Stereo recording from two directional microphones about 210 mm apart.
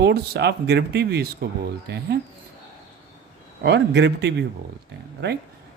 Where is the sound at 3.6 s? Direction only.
55° right (ahead or behind).